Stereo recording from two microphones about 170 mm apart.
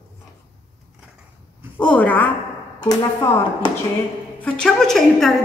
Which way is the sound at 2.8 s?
25° left (ahead or behind).